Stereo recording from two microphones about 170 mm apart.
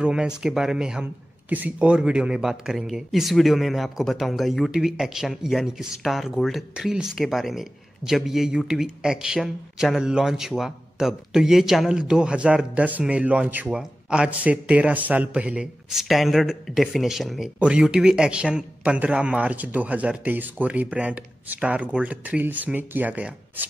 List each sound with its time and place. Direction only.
0.0 s speech: 5° right (ahead or behind)